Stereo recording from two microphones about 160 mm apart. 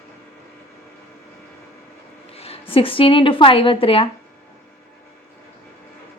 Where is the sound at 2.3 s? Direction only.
40° left (ahead or behind).